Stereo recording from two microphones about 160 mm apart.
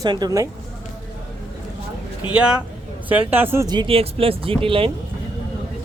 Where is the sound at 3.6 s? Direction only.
30° right (ahead or behind).